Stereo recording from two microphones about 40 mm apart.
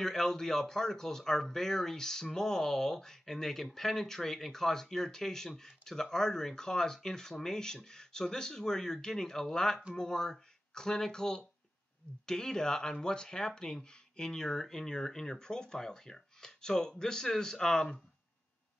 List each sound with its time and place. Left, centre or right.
0.0 s speech: centre